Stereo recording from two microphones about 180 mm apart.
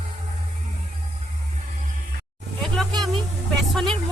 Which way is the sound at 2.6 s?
Centre (ahead or behind).